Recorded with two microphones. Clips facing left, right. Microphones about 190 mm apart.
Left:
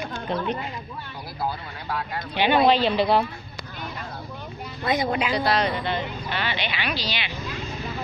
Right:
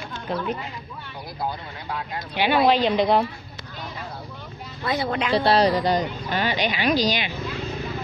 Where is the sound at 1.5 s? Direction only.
20° right (ahead or behind).